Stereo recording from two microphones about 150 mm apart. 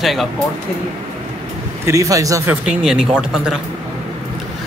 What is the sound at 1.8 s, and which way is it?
Speech, 20° right (ahead or behind).